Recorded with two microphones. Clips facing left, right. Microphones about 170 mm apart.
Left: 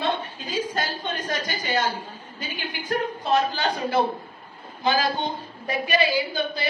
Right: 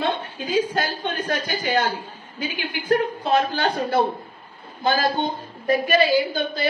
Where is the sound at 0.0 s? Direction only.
60° right (ahead or behind).